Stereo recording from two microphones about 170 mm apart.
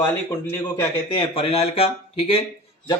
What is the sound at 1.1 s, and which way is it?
Speech, 30° left (ahead or behind).